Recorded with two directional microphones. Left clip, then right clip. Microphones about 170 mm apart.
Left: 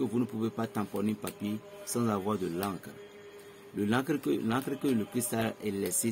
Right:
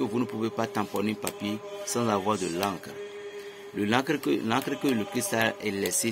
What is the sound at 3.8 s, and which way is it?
Speech, 15° left (ahead or behind).